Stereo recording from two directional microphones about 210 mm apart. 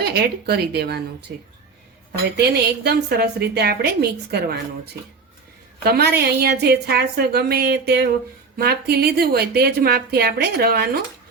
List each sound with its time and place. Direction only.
0.0 s a woman's voice: 50° right (ahead or behind)
2.8 s a woman's voice: 50° right (ahead or behind)
5.8 s a woman's voice: 50° right (ahead or behind)